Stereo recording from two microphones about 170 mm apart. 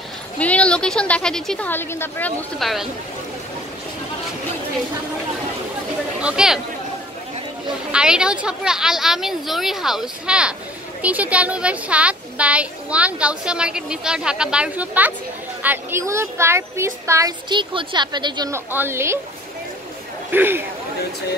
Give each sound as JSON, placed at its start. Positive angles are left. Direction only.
{"t": 0.4, "sound": "a woman's voice", "side_deg": 5}
{"t": 6.2, "sound": "a woman's voice", "side_deg": -5}
{"t": 7.9, "sound": "a woman's voice", "side_deg": -5}
{"t": 18.5, "sound": "speech", "side_deg": -15}
{"t": 20.2, "sound": "speech", "side_deg": -10}